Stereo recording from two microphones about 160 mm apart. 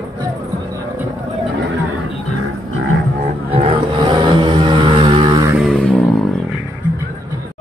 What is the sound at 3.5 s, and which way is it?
Vehicle, 35° right (ahead or behind).